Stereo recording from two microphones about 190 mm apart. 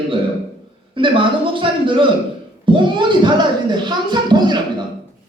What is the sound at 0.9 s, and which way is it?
Speech, 25° right (ahead or behind).